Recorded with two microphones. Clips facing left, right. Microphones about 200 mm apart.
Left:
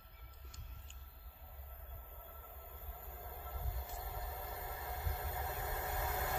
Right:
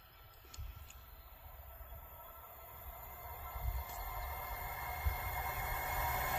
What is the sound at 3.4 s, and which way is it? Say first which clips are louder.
Whale vocalization: left 1 dB; 40° left (ahead or behind).